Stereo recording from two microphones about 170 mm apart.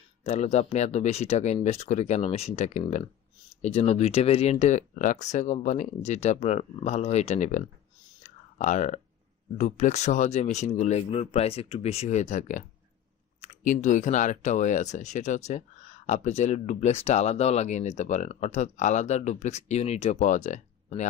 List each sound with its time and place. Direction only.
0.2 s speech: 40° left (ahead or behind)
8.2 s a sound: 45° left (ahead or behind)
9.6 s speech: 45° left (ahead or behind)